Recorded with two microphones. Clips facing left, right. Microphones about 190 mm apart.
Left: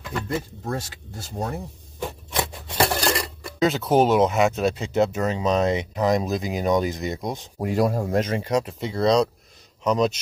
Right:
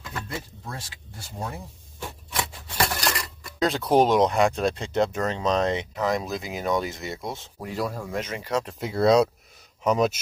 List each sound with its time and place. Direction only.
2.3 s a sound: 30° left (ahead or behind)
3.5 s speech: centre (ahead or behind); by 7.4 s 20° left (ahead or behind)
7.5 s speech: 45° left (ahead or behind)
8.4 s speech: 15° left (ahead or behind)
8.6 s speech: centre (ahead or behind)